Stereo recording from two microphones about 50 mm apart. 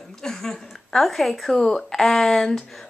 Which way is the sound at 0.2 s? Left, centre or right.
Centre.